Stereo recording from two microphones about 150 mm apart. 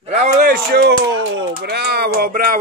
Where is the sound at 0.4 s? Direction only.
80° right.